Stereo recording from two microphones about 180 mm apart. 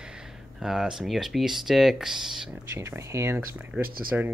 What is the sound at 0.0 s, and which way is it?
Speech, 5° right (ahead or behind).